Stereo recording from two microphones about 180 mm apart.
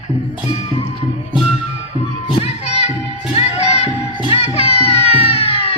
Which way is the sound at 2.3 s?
35° left (ahead or behind).